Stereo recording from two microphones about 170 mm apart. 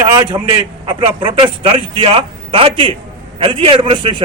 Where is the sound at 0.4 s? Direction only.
30° right (ahead or behind).